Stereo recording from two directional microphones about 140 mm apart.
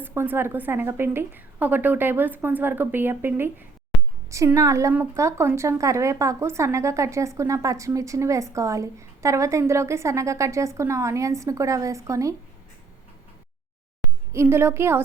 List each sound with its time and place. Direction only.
0.0 s a woman's voice: 15° right (ahead or behind)
14.0 s a woman's voice: 15° right (ahead or behind)